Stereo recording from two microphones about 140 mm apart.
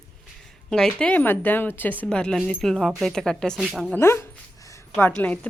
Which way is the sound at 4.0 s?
15° left (ahead or behind).